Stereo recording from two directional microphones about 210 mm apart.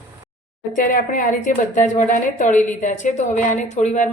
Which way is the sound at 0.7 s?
40° left (ahead or behind).